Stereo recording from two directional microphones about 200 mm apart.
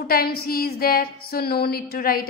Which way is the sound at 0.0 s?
50° left (ahead or behind).